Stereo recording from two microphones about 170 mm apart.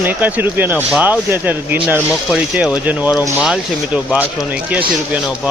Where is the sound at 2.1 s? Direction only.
Centre (ahead or behind).